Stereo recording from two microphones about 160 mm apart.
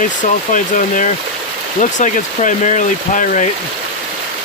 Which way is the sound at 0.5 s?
55° left (ahead or behind).